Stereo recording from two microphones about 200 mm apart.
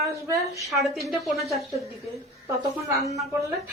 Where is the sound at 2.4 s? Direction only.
15° right (ahead or behind).